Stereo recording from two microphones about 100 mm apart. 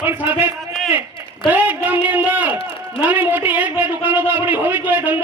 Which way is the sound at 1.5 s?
20° right (ahead or behind).